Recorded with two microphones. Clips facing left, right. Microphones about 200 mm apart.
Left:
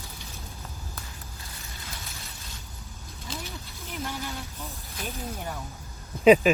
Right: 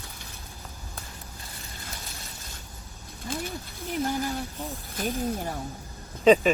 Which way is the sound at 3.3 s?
50° right (ahead or behind).